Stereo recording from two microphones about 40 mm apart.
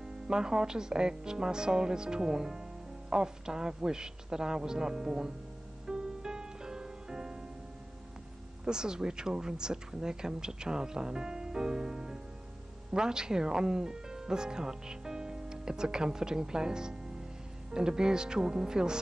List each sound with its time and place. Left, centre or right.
0.0 s a woman's voice: centre
5.9 s music: centre
8.6 s a woman's voice: centre